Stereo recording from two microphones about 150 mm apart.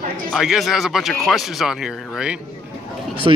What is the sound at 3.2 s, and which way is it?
Speech, 30° right (ahead or behind).